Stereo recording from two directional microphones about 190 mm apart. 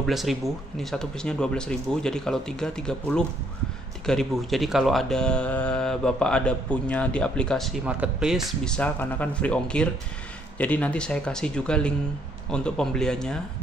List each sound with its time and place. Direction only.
0.0 s speech: centre (ahead or behind)